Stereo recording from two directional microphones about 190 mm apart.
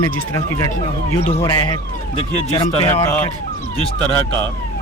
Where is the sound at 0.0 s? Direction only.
15° left (ahead or behind).